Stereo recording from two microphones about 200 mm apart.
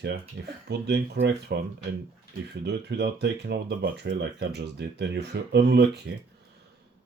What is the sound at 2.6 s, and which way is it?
Speech, 55° right (ahead or behind).